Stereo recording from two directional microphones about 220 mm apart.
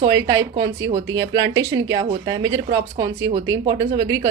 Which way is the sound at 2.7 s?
20° right (ahead or behind).